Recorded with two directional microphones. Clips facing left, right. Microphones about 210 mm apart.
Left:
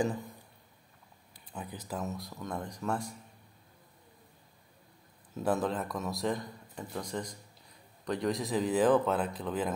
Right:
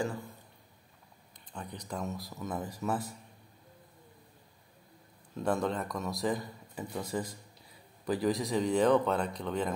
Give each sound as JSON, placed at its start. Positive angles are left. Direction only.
{"t": 0.0, "sound": "speech", "side_deg": 15}
{"t": 1.3, "sound": "a man's voice", "side_deg": 5}
{"t": 5.3, "sound": "a man's voice", "side_deg": 5}